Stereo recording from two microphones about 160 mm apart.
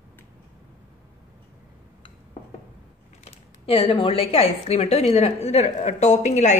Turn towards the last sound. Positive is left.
turn(degrees=45)  # may be behind; listen again after turning